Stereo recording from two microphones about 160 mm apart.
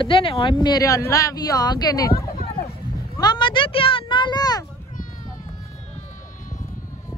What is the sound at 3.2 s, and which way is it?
A child's voice, 30° left (ahead or behind).